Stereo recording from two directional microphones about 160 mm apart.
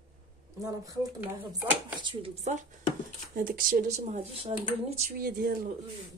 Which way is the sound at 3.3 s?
60° right (ahead or behind).